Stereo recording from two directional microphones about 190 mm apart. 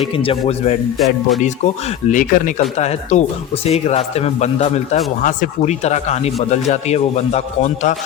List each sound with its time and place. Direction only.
0.2 s a man's voice: 30° left (ahead or behind)
0.9 s speech: centre (ahead or behind)
2.0 s a man's voice: 45° left (ahead or behind)